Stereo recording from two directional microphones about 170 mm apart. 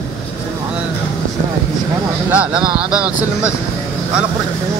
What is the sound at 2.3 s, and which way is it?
Speech, 5° right (ahead or behind).